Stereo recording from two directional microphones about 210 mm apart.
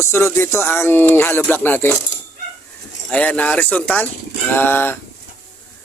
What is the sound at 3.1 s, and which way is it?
Speech, 5° left (ahead or behind).